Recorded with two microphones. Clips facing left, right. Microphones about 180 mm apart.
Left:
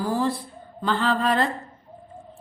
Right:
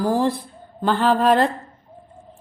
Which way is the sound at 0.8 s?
55° right (ahead or behind).